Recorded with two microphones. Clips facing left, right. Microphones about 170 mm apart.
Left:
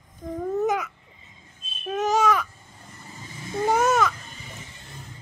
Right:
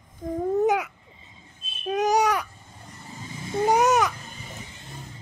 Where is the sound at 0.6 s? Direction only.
15° right (ahead or behind).